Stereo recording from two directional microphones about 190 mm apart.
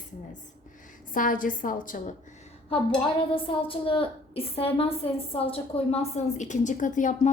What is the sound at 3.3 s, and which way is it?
A woman's voice, 30° left (ahead or behind).